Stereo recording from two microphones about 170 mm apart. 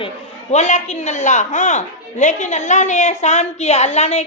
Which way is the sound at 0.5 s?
40° left (ahead or behind).